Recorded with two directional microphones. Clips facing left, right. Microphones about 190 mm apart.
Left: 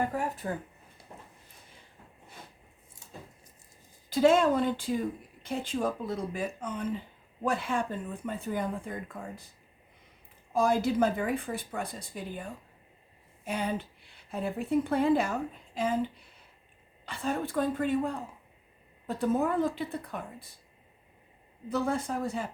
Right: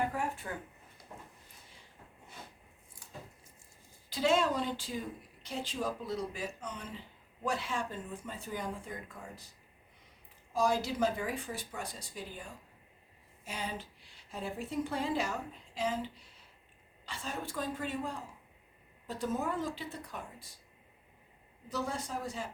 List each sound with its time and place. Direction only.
0.0 s a sound: 40° left (ahead or behind)
4.1 s speech: 50° left (ahead or behind)
10.5 s a woman's voice: 55° left (ahead or behind)
17.1 s speech: 55° left (ahead or behind)
21.7 s speech: 55° left (ahead or behind)